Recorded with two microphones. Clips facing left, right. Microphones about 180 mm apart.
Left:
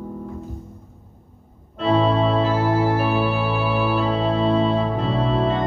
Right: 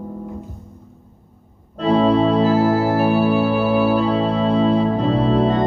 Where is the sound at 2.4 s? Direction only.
35° right (ahead or behind).